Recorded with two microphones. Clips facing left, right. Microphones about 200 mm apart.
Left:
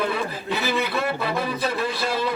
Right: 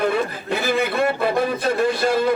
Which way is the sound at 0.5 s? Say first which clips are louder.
Right 4 dB; 50° right (ahead or behind).